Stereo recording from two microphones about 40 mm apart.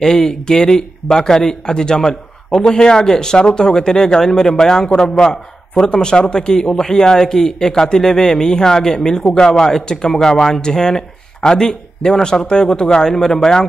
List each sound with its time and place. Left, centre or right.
0.0 s a man's voice: centre